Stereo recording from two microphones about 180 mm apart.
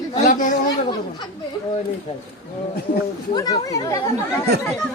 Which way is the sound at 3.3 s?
20° left (ahead or behind).